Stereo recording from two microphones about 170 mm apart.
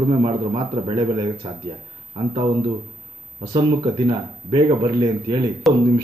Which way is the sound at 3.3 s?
30° right (ahead or behind).